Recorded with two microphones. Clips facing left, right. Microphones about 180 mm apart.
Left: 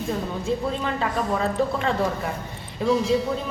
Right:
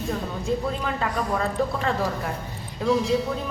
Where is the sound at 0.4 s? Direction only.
Centre (ahead or behind).